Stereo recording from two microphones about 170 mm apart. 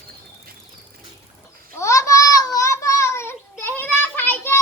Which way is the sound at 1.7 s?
15° left (ahead or behind).